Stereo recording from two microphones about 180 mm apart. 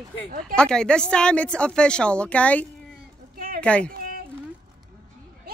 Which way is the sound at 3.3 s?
50° right (ahead or behind).